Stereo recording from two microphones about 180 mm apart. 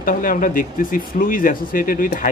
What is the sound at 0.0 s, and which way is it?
Speech, 50° left (ahead or behind).